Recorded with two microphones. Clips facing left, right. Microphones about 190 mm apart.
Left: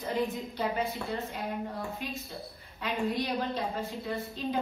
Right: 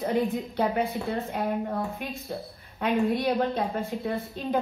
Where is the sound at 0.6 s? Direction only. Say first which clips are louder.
Right 5 dB; 60° right (ahead or behind).